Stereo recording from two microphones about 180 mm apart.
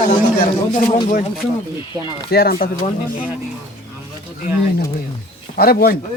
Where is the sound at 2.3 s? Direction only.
60° left (ahead or behind).